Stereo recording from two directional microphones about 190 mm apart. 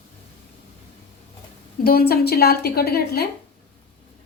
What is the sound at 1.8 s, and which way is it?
A woman's voice, 55° left (ahead or behind).